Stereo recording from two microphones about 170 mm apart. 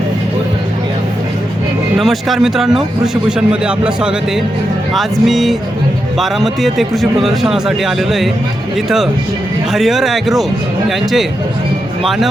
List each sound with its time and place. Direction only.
2.0 s a man's voice: centre (ahead or behind)
9.7 s a man's voice: centre (ahead or behind)